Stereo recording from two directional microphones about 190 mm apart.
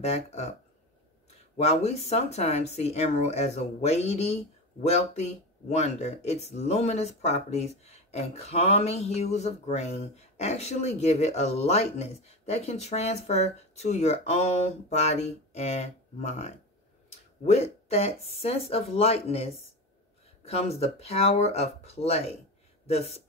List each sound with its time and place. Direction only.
0.0 s speech: 35° left (ahead or behind)
1.6 s speech: 35° left (ahead or behind)
20.4 s speech: 35° left (ahead or behind)